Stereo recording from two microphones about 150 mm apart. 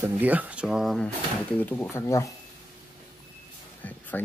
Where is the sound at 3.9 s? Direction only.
10° left (ahead or behind).